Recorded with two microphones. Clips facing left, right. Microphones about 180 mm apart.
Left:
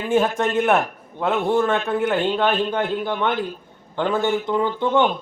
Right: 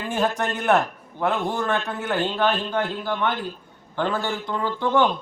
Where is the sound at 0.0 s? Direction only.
20° left (ahead or behind).